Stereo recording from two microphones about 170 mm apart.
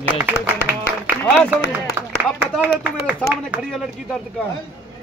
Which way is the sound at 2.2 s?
10° right (ahead or behind).